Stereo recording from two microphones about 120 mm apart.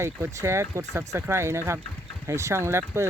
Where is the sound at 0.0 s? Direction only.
25° right (ahead or behind).